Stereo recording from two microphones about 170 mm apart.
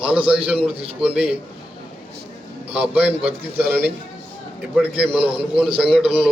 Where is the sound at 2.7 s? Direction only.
10° right (ahead or behind).